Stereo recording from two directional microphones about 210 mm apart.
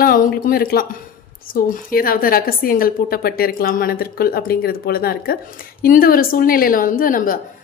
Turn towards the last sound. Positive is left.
turn(degrees=40)  # may be behind; listen again after turning